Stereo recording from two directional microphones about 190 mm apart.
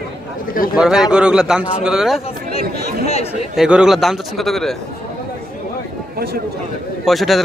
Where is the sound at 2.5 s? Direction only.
30° left (ahead or behind).